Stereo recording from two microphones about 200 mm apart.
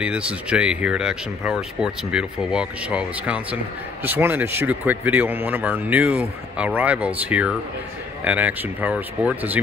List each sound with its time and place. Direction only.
0.0 s speech: 5° right (ahead or behind)